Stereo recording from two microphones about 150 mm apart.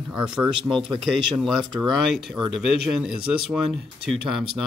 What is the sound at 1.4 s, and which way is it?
Speech, centre (ahead or behind).